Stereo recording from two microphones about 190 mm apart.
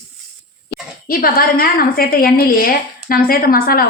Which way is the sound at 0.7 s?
50° left (ahead or behind).